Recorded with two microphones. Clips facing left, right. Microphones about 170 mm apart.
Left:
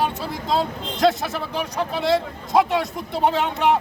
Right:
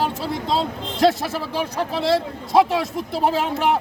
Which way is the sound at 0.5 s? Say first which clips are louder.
Left 4 dB; 30° right (ahead or behind).